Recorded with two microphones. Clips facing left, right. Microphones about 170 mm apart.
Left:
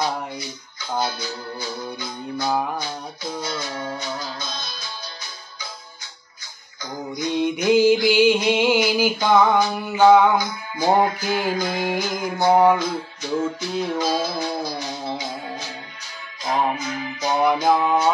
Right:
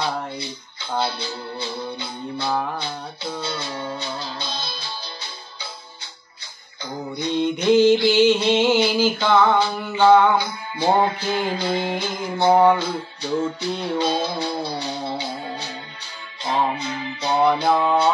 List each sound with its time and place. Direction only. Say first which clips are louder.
0.0 s music: even; 30° right (ahead or behind)
7.2 s music: right 1 dB; 10° left (ahead or behind)
10.3 s music: even; 30° right (ahead or behind)